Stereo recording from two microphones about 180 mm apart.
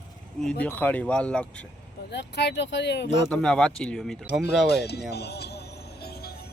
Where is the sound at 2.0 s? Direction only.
70° left (ahead or behind).